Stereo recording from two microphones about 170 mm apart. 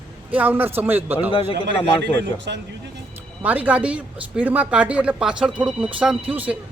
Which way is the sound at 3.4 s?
10° right (ahead or behind).